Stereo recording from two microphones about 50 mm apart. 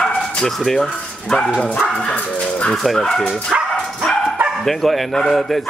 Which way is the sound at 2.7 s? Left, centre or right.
Centre.